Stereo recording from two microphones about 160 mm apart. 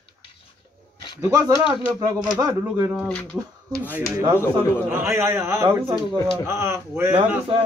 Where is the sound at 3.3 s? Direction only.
10° right (ahead or behind).